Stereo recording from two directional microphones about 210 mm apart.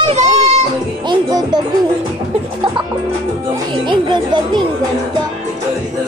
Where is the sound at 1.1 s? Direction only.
20° right (ahead or behind).